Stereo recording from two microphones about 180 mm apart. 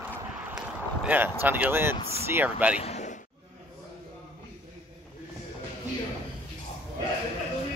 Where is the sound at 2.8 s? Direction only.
40° left (ahead or behind).